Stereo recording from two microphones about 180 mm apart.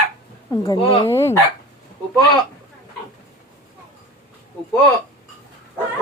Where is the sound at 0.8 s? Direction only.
30° left (ahead or behind).